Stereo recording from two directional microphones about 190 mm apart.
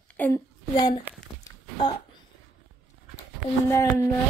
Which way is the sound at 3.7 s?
15° left (ahead or behind).